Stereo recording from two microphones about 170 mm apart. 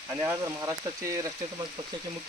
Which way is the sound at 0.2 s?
15° right (ahead or behind).